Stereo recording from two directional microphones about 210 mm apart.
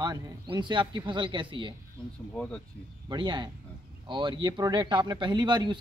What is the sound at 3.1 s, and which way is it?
Speech, 20° right (ahead or behind).